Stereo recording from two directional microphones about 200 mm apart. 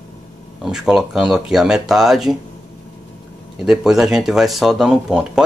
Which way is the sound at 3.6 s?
5° right (ahead or behind).